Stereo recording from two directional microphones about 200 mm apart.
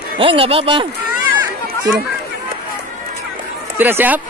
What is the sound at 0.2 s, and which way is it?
Speech, 25° right (ahead or behind).